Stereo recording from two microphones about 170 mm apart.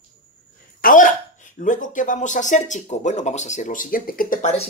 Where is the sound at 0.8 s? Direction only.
50° left (ahead or behind).